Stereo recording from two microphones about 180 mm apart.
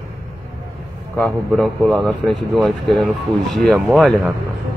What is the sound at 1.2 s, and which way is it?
Speech, centre (ahead or behind).